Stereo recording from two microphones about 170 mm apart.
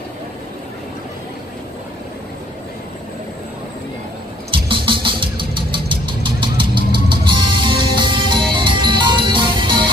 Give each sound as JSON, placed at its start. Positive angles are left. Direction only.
{"t": 4.5, "sound": "vehicle", "side_deg": -30}